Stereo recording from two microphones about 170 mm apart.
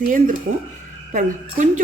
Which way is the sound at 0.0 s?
50° right (ahead or behind).